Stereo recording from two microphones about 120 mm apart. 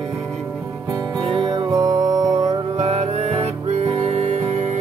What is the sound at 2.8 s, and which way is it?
Music, 70° right (ahead or behind).